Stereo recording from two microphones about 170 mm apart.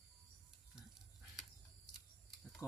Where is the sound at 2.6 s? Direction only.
20° left (ahead or behind).